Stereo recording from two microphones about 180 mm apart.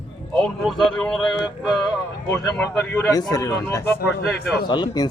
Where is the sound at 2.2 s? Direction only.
10° left (ahead or behind).